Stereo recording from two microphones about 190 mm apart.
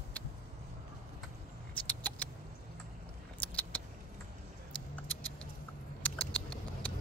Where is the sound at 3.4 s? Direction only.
10° left (ahead or behind).